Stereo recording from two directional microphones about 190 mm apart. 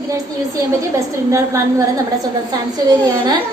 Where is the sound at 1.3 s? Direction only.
15° right (ahead or behind).